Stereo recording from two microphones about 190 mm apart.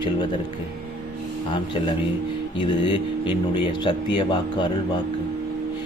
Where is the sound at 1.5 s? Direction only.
25° left (ahead or behind).